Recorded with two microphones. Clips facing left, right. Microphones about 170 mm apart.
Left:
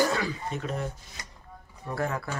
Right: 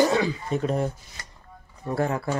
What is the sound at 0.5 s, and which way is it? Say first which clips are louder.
Speech: right 8 dB; 35° right (ahead or behind).